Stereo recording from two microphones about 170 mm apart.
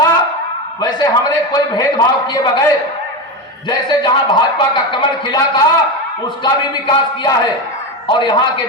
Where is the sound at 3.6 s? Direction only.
25° left (ahead or behind).